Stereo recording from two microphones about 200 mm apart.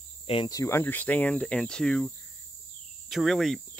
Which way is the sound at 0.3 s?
20° left (ahead or behind).